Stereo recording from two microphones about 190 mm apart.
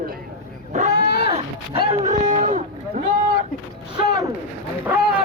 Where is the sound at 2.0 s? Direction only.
40° right (ahead or behind).